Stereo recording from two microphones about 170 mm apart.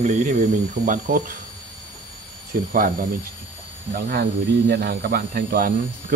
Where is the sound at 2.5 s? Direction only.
55° right (ahead or behind).